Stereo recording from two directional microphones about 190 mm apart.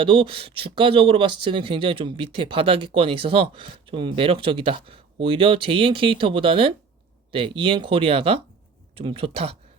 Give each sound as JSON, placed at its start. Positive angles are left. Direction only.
{"t": 0.0, "sound": "speech", "side_deg": -25}